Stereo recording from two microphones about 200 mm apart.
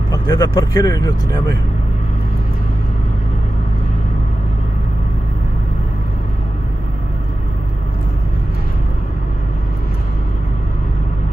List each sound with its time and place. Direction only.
0.1 s speech: 15° left (ahead or behind)